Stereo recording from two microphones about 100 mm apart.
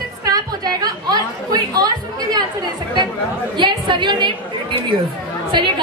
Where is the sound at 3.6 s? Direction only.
50° right (ahead or behind).